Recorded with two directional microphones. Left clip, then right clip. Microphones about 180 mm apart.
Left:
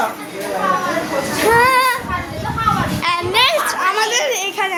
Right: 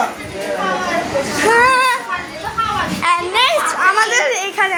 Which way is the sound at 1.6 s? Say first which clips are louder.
Right 1 dB; 5° left (ahead or behind).